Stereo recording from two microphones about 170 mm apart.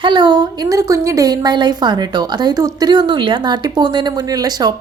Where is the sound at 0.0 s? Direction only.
25° right (ahead or behind).